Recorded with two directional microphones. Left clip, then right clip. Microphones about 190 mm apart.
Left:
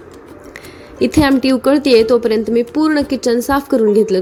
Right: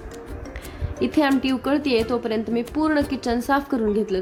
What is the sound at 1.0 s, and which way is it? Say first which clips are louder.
A woman's voice: left 8 dB; 20° left (ahead or behind).